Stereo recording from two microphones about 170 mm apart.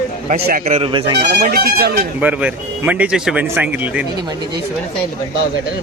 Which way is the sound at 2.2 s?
10° right (ahead or behind).